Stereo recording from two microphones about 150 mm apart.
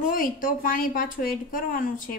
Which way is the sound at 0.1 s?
65° left (ahead or behind).